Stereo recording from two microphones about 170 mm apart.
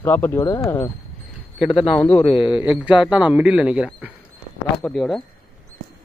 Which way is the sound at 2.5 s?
5° right (ahead or behind).